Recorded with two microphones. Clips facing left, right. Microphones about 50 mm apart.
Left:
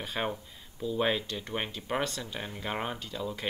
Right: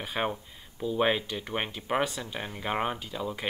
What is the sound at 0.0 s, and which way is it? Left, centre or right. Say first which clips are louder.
Speech: right 2 dB; centre.